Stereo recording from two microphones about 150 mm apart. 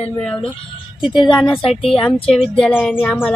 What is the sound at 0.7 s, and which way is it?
Speech, 35° left (ahead or behind).